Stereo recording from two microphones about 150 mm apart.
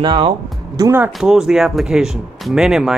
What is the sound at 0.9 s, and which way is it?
Speech, 10° right (ahead or behind).